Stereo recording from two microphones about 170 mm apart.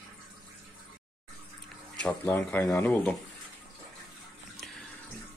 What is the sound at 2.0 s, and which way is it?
Speech, 10° left (ahead or behind).